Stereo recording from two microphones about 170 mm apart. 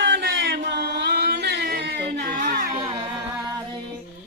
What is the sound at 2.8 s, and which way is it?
Music, 30° right (ahead or behind).